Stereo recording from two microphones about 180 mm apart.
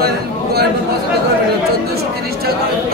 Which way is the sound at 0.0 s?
60° right (ahead or behind).